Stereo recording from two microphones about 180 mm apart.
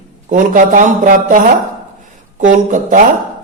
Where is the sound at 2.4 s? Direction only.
45° right (ahead or behind).